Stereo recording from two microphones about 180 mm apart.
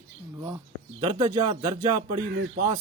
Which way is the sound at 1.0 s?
20° right (ahead or behind).